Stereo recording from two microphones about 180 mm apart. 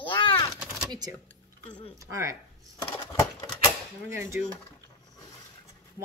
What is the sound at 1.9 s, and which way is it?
Speech, 15° right (ahead or behind).